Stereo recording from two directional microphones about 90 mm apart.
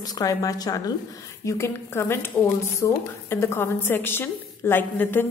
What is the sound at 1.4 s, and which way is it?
A woman's voice, 30° left (ahead or behind).